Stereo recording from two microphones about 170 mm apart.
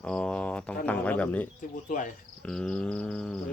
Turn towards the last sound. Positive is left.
turn(degrees=5)  # may be behind; listen again after turning